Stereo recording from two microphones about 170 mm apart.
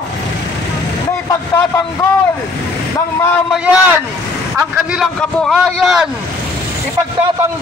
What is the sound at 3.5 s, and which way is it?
A man's voice, 5° right (ahead or behind).